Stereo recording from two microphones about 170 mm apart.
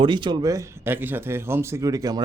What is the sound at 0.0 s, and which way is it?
A man's voice, 25° right (ahead or behind).